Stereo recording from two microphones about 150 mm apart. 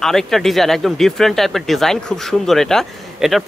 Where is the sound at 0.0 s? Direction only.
5° left (ahead or behind).